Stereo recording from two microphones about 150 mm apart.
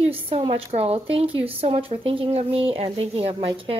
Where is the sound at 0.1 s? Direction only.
35° right (ahead or behind).